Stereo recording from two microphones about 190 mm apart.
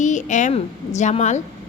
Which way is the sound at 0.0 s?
40° left (ahead or behind).